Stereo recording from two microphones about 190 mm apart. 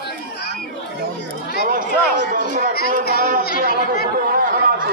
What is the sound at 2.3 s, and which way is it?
Chatter, 45° right (ahead or behind).